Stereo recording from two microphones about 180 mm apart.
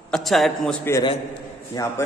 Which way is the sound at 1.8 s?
20° left (ahead or behind).